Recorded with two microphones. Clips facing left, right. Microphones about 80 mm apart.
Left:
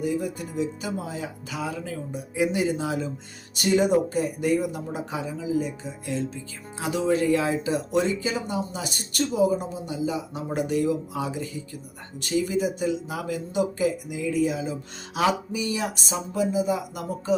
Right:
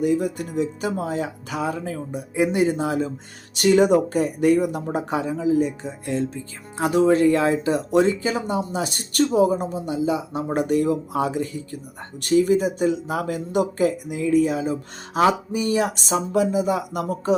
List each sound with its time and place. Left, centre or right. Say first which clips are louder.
0.0 s speech: right 6 dB; right
3.5 s speech: right 5 dB; right
15.9 s speech: right 8 dB; right